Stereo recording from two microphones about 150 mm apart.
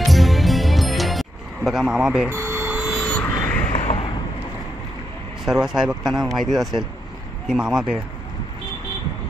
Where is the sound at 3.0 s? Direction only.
10° left (ahead or behind).